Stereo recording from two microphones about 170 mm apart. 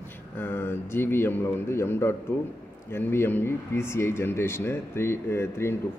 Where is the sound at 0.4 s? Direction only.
10° left (ahead or behind).